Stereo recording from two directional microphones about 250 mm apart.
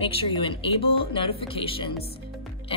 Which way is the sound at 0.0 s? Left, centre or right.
Left.